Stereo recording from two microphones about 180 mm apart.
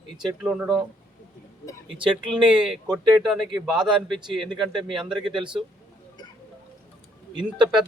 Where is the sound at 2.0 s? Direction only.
5° right (ahead or behind).